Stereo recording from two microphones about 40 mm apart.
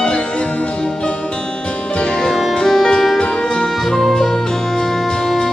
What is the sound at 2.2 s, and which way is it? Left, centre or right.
Music, centre.